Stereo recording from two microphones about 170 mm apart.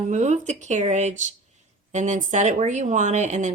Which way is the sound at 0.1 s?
45° right (ahead or behind).